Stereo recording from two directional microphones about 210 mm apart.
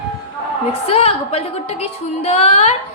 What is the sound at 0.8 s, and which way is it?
A woman's voice, 30° left (ahead or behind).